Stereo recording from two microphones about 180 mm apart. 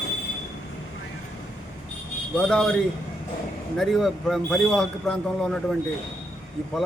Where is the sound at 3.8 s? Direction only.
Centre (ahead or behind).